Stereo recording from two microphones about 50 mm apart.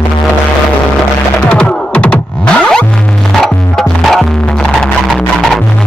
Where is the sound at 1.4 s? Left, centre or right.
Centre.